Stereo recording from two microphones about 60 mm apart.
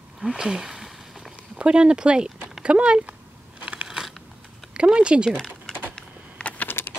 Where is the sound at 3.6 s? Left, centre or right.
Centre.